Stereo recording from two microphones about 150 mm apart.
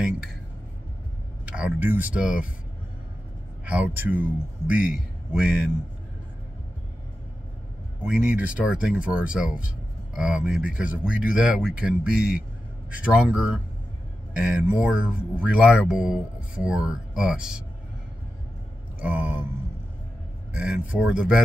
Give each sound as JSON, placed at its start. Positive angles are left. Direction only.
{"t": 1.6, "sound": "speech", "side_deg": -10}
{"t": 3.6, "sound": "speech", "side_deg": -10}
{"t": 4.7, "sound": "a man's voice", "side_deg": 65}
{"t": 5.3, "sound": "speech", "side_deg": -5}
{"t": 8.0, "sound": "speech", "side_deg": -5}
{"t": 18.9, "sound": "mantra", "side_deg": -10}
{"t": 20.5, "sound": "speech", "side_deg": -5}